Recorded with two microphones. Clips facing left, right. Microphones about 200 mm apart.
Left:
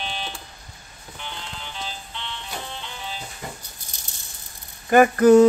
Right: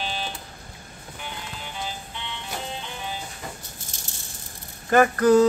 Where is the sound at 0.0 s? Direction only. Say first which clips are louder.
Right 1 dB; 5° right (ahead or behind).